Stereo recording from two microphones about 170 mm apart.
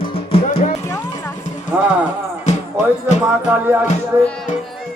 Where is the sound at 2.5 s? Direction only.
45° left (ahead or behind).